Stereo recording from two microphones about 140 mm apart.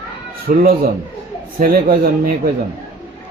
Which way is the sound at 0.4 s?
90° right.